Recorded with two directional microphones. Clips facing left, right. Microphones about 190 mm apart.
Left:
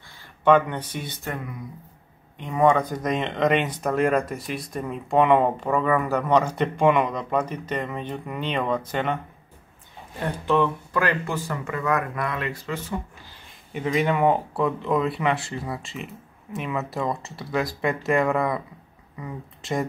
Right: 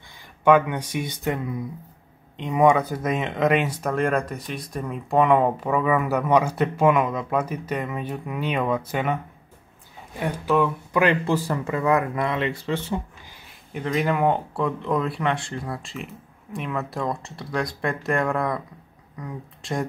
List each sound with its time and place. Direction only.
0.5 s speech: 10° right (ahead or behind)
10.9 s speech: 20° right (ahead or behind)
11.2 s speech: 35° right (ahead or behind)
13.7 s speech: centre (ahead or behind)